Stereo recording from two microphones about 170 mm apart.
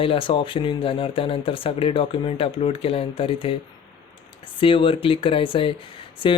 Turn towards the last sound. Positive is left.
turn(degrees=30)  # may be behind; listen again after turning